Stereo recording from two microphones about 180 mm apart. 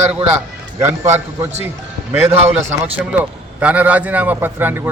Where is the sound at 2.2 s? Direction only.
35° right (ahead or behind).